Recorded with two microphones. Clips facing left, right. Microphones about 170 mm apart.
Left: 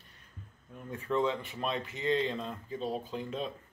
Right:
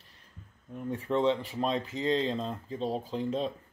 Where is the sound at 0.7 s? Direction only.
25° right (ahead or behind).